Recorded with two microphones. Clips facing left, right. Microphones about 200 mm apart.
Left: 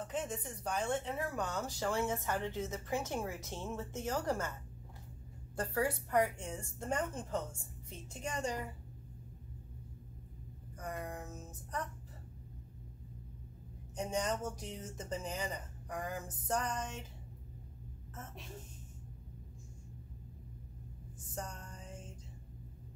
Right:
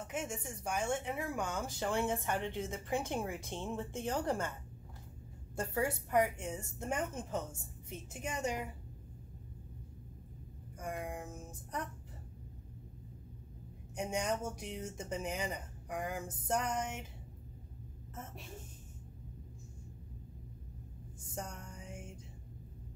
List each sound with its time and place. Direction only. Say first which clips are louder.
0.0 s speech: left 1 dB; 15° right (ahead or behind)
5.6 s a woman's voice: even; 25° right (ahead or behind)
6.3 s a woman's voice: right 2 dB; 10° right (ahead or behind)
10.8 s speech: right 2 dB; 15° right (ahead or behind)
13.9 s speech: even; 10° right (ahead or behind)
21.4 s music: even; 10° right (ahead or behind)